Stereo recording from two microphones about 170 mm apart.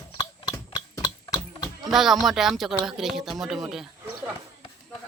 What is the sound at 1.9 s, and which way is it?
Speech, centre (ahead or behind).